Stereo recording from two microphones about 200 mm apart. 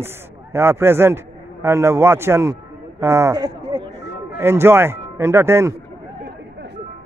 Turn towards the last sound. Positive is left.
turn(degrees=-10)  # may be behind; listen again after turning